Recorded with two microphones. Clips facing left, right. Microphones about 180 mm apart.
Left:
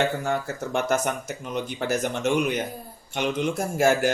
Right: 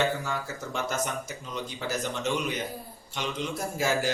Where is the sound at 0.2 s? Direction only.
60° left (ahead or behind).